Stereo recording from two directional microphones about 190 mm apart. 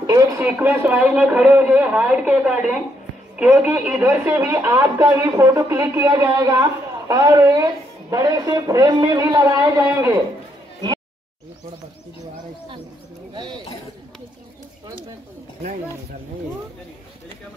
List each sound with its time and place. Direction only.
0.0 s radio: 20° right (ahead or behind)
0.5 s speech: 10° right (ahead or behind)
13.3 s a sound: 25° right (ahead or behind)